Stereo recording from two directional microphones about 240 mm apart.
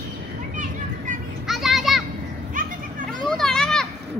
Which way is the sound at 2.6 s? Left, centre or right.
Right.